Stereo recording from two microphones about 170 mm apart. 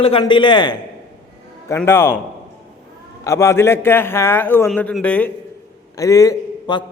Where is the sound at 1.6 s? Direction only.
15° left (ahead or behind).